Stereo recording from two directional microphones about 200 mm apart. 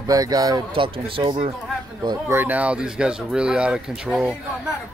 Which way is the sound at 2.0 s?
10° right (ahead or behind).